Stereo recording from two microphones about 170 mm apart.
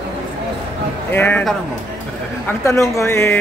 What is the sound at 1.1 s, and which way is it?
Speech, 10° left (ahead or behind).